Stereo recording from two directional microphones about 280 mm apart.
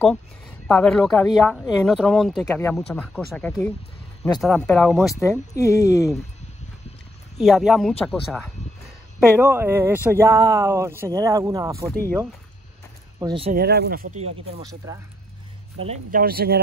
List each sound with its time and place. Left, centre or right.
0.0 s speech: centre
5.2 s speech: centre
7.3 s speech: centre
11.8 s speech: centre
13.2 s speech: centre
13.5 s speech: right; by 15.0 s centre
15.8 s speech: right